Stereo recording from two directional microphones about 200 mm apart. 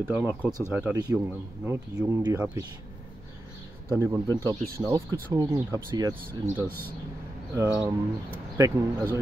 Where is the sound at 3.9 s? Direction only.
15° right (ahead or behind).